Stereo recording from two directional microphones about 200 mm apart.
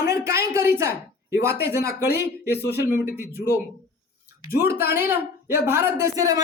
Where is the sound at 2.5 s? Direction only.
55° left (ahead or behind).